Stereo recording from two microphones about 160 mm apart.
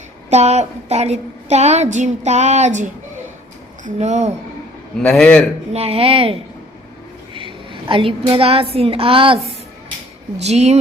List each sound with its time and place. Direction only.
0.3 s a woman's voice: 45° right (ahead or behind)
5.0 s a man's voice: 5° left (ahead or behind)
5.7 s a woman's voice: 40° right (ahead or behind)